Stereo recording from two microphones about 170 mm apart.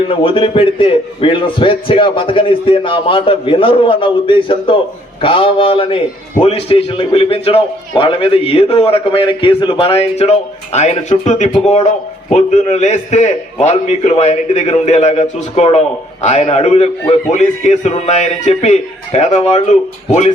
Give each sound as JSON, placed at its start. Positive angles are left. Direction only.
{"t": 0.1, "sound": "a man's voice", "side_deg": 30}